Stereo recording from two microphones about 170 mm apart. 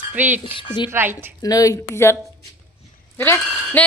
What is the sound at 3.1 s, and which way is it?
Speech, 15° left (ahead or behind).